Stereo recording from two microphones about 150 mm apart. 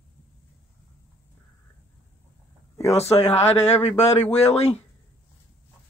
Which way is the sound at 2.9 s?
45° left (ahead or behind).